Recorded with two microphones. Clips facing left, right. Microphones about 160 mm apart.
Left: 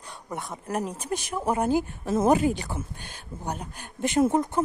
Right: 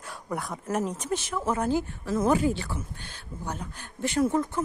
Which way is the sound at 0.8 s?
10° left (ahead or behind).